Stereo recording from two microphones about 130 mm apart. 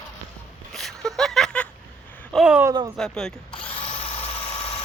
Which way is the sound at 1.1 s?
5° left (ahead or behind).